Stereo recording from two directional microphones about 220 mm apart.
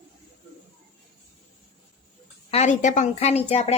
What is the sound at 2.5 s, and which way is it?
A woman's voice, 30° left (ahead or behind).